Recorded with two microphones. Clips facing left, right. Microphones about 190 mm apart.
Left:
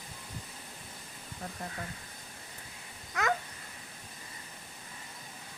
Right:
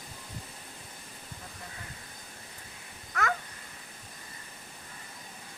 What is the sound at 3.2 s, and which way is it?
Babbling, 20° left (ahead or behind).